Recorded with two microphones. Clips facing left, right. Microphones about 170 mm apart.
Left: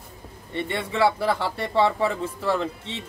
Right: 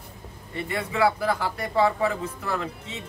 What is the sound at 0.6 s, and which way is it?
Speech, 30° left (ahead or behind).